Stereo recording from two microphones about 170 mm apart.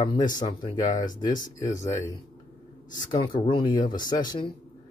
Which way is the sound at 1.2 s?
20° left (ahead or behind).